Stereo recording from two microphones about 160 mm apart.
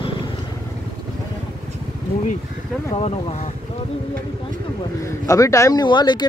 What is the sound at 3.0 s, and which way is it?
Speech, 40° left (ahead or behind).